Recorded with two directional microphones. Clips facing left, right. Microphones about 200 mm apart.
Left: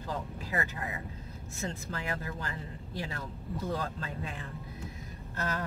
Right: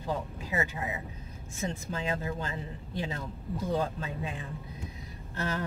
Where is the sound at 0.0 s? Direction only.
20° right (ahead or behind).